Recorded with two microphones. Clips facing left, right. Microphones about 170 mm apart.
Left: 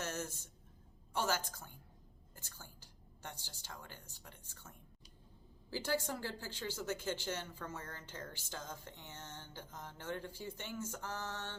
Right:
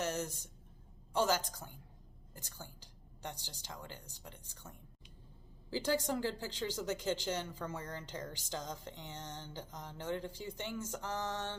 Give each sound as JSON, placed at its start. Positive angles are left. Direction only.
{"t": 0.0, "sound": "a sound", "side_deg": -15}
{"t": 1.2, "sound": "a woman's voice", "side_deg": -15}
{"t": 5.7, "sound": "speech", "side_deg": -15}